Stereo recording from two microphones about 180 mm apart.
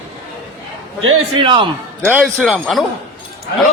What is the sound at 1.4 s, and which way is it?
Speech, 25° right (ahead or behind).